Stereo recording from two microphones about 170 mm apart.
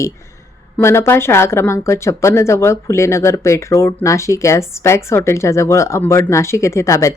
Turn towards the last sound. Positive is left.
turn(degrees=15)  # may be behind; listen again after turning